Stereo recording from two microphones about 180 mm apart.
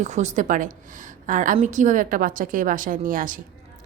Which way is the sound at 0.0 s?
40° right (ahead or behind).